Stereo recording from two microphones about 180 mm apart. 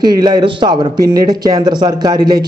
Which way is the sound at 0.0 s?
20° right (ahead or behind).